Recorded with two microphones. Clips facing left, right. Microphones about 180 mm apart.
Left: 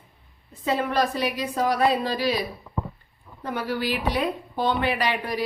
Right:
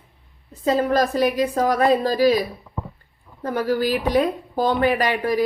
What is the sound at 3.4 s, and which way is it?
A woman's voice, 40° right (ahead or behind).